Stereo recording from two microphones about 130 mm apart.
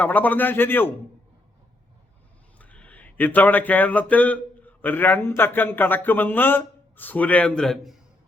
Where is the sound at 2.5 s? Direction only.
10° left (ahead or behind).